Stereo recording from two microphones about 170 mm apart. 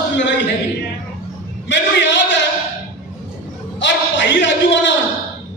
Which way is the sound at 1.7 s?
90° left.